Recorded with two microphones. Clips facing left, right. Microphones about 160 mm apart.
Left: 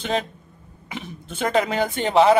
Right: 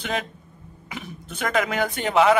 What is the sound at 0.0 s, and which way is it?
A man's voice, 30° left (ahead or behind).